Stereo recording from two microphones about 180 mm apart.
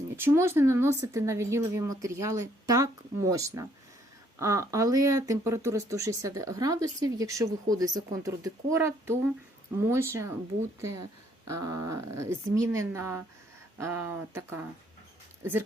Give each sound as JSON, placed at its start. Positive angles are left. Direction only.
{"t": 0.2, "sound": "speech", "side_deg": -15}